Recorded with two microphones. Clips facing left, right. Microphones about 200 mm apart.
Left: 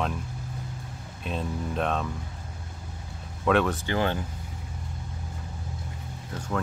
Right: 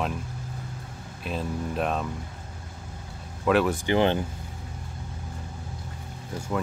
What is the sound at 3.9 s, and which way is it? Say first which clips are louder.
Speech: right 5 dB; 20° right (ahead or behind).